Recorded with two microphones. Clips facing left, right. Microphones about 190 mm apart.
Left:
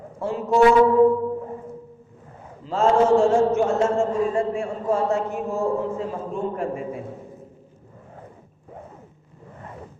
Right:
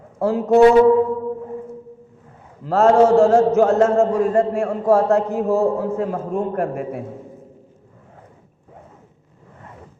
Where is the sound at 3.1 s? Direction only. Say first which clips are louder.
Right 4 dB; 65° right (ahead or behind).